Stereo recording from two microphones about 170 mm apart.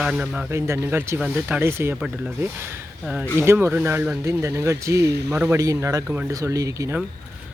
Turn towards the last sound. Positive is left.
turn(degrees=-20)  # may be behind; listen again after turning